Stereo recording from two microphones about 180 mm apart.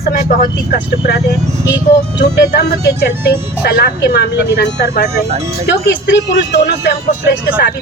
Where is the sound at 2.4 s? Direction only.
65° left (ahead or behind).